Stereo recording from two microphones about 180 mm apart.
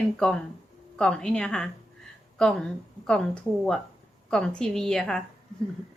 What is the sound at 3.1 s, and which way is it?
Speech, centre (ahead or behind).